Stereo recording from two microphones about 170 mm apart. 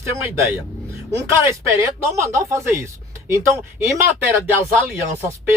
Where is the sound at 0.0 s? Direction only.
15° right (ahead or behind).